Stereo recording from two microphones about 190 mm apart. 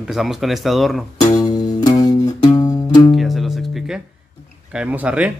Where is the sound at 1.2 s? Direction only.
20° left (ahead or behind).